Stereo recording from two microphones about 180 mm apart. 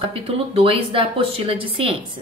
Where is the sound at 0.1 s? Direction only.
30° right (ahead or behind).